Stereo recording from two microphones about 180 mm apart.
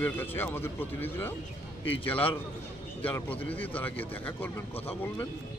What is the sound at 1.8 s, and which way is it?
Speech, 30° left (ahead or behind).